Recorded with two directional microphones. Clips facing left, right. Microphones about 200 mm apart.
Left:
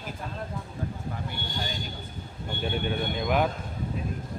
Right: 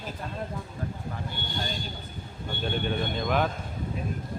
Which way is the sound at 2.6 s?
5° left (ahead or behind).